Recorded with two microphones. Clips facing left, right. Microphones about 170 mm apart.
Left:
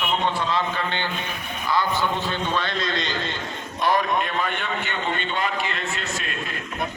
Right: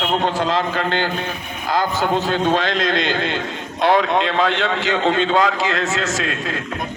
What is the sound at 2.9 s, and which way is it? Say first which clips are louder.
A man's voice: right 7 dB; 55° right (ahead or behind).